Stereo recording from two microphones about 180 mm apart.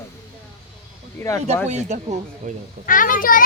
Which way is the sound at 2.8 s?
50° left (ahead or behind).